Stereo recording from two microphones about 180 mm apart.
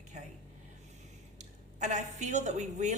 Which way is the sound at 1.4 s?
40° right (ahead or behind).